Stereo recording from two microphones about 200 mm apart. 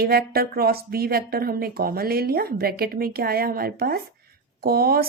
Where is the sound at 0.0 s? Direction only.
50° right (ahead or behind).